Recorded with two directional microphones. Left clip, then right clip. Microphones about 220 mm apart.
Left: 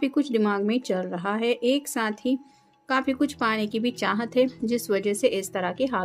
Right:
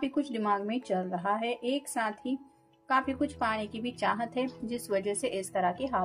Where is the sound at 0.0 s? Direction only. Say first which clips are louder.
Left 7 dB; 40° left (ahead or behind).